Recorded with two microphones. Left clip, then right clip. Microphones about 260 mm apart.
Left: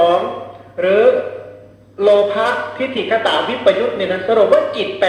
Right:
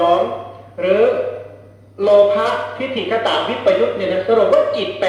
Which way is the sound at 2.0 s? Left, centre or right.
Left.